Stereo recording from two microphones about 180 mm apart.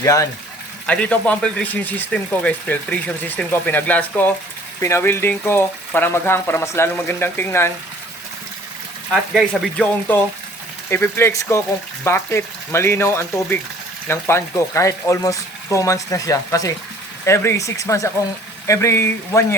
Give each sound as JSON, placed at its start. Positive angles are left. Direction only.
{"t": 0.0, "sound": "speech", "side_deg": 20}
{"t": 0.9, "sound": "speech", "side_deg": 10}
{"t": 9.3, "sound": "speech", "side_deg": 0}